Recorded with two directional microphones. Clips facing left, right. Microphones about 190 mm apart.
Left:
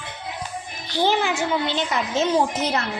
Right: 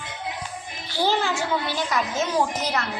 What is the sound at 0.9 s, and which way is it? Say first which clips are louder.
A woman's voice: left 2 dB; 20° left (ahead or behind).